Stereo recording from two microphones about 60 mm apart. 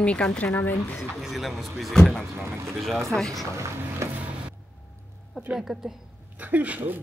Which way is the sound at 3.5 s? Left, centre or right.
Right.